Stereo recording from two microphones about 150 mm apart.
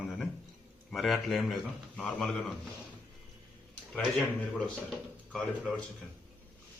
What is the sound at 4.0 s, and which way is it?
Speech, centre (ahead or behind).